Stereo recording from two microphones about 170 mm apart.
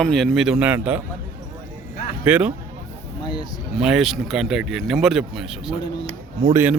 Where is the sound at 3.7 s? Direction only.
5° right (ahead or behind).